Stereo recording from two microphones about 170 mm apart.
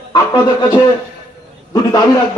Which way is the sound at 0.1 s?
25° left (ahead or behind).